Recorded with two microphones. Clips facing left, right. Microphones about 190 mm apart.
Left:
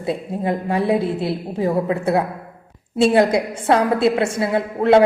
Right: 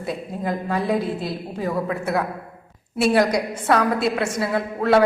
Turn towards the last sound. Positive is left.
turn(degrees=25)  # may be behind; listen again after turning